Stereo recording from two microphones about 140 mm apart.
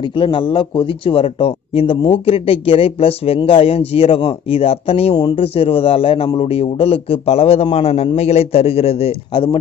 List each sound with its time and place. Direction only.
0.1 s a man's voice: 35° left (ahead or behind)